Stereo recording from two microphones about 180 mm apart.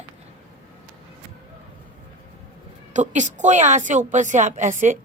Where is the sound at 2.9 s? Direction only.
40° right (ahead or behind).